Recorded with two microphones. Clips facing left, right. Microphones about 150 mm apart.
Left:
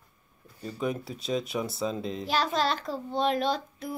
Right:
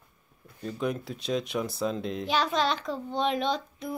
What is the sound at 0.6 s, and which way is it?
A child's voice, 5° left (ahead or behind).